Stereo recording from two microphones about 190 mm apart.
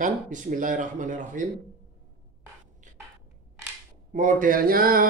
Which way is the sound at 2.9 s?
40° right (ahead or behind).